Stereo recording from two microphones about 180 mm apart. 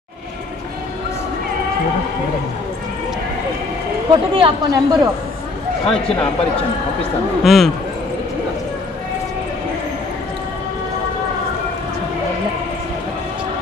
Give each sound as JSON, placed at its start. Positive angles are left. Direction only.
{"t": 4.1, "sound": "speech", "side_deg": -25}
{"t": 7.4, "sound": "speech", "side_deg": 0}